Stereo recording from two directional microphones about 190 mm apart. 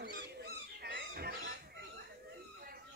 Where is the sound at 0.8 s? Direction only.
60° right (ahead or behind).